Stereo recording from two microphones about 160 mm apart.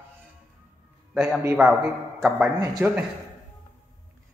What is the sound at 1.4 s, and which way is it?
Speech, 15° right (ahead or behind).